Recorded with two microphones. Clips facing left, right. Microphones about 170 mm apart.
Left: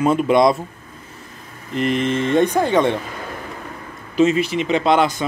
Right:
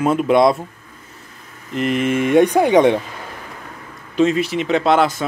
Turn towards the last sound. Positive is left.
turn(degrees=0)  # may be behind; listen again after turning